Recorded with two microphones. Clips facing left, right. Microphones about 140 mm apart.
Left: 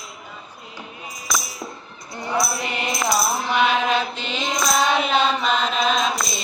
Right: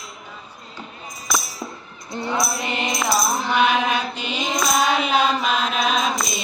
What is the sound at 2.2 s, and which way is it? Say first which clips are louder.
Music: even; 20° right (ahead or behind).